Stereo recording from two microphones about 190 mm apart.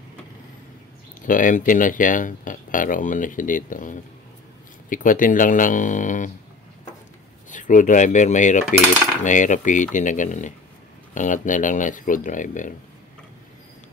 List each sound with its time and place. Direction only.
1.2 s speech: 45° left (ahead or behind)
7.4 s cutlery: 40° left (ahead or behind)
11.1 s speech: 40° left (ahead or behind)